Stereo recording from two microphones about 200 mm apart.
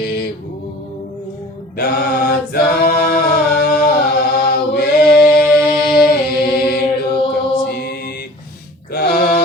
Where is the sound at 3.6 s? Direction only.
55° left (ahead or behind).